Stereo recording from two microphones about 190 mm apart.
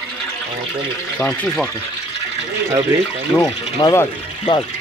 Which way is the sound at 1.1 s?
5° left (ahead or behind).